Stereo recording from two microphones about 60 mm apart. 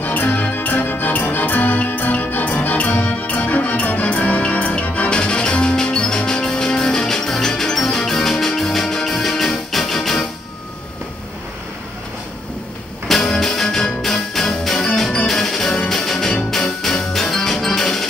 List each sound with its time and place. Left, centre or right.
0.0 s music: left; by 10.2 s centre
13.1 s music: centre